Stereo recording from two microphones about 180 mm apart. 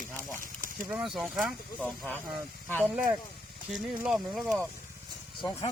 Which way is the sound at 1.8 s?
10° left (ahead or behind).